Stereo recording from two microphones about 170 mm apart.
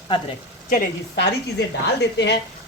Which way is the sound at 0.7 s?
75° left (ahead or behind).